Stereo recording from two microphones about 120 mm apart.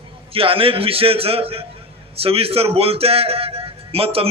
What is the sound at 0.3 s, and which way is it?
A man's voice, 50° right (ahead or behind).